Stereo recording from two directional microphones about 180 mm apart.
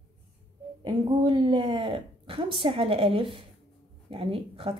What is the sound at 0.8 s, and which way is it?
A woman's voice, 25° right (ahead or behind).